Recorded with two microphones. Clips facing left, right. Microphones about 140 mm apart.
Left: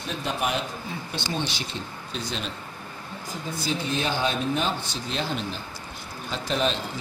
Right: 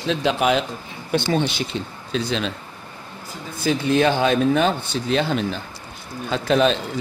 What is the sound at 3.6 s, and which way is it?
A man's voice, 65° right (ahead or behind).